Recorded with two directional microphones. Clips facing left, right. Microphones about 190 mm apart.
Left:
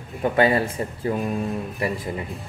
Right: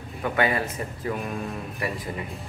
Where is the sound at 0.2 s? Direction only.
30° left (ahead or behind).